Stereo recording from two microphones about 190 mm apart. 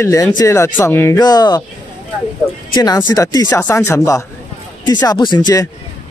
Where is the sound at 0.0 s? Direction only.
15° left (ahead or behind).